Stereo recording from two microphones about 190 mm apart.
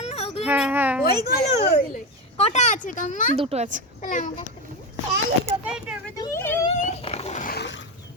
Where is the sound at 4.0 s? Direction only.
45° left (ahead or behind).